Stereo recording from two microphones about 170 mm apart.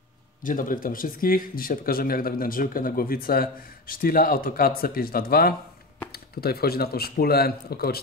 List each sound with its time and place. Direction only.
0.4 s speech: 55° left (ahead or behind)